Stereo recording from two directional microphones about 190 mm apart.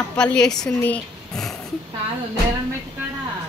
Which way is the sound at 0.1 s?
5° left (ahead or behind).